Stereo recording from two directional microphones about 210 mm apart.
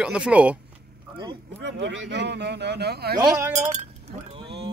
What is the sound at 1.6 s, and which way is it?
Speech, 55° right (ahead or behind).